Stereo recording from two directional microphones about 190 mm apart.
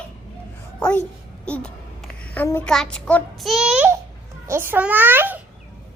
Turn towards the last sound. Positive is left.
turn(degrees=-10)  # may be behind; listen again after turning